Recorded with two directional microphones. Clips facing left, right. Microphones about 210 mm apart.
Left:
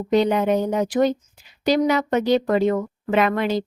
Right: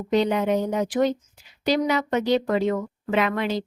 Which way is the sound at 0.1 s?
50° left (ahead or behind).